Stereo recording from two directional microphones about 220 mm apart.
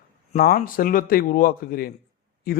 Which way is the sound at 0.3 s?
45° left (ahead or behind).